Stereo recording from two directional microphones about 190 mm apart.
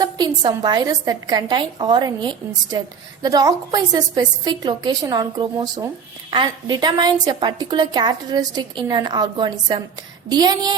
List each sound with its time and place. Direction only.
0.0 s a woman's voice: 20° right (ahead or behind)